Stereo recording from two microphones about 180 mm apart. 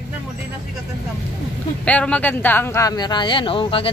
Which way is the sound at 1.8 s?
5° left (ahead or behind).